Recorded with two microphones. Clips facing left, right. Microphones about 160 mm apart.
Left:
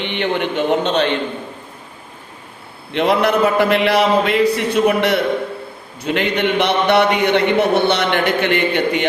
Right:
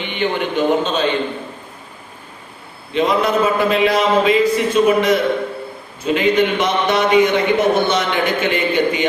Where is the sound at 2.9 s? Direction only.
70° left (ahead or behind).